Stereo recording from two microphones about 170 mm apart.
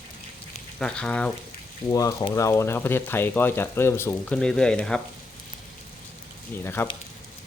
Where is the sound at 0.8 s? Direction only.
5° left (ahead or behind).